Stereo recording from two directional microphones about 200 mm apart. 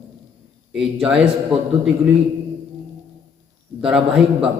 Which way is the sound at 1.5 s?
25° right (ahead or behind).